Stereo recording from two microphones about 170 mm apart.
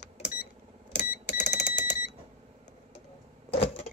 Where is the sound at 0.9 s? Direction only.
45° left (ahead or behind).